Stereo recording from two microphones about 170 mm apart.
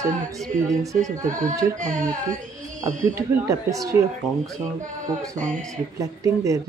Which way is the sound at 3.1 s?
20° right (ahead or behind).